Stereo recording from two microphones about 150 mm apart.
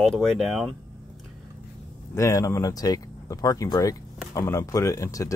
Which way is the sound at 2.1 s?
20° left (ahead or behind).